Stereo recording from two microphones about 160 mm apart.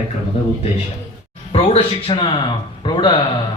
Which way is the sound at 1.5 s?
35° left (ahead or behind).